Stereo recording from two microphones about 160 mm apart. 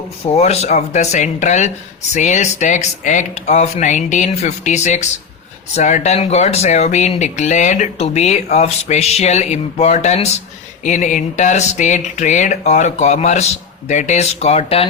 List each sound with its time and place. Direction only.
0.3 s speech: 45° left (ahead or behind)